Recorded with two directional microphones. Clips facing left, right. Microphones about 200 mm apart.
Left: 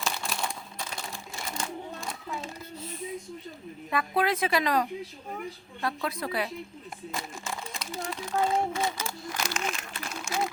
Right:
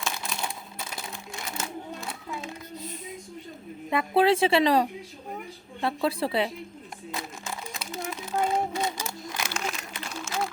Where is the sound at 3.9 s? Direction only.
30° right (ahead or behind).